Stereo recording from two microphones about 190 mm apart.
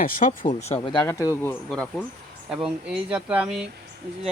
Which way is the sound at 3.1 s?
5° right (ahead or behind).